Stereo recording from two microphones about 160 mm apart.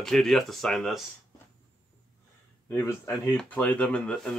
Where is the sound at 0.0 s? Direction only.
5° left (ahead or behind).